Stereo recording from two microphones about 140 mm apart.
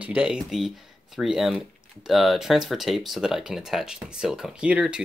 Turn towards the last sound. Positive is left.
turn(degrees=-10)  # may be behind; listen again after turning